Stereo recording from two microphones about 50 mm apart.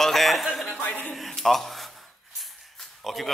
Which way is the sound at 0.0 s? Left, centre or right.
Centre.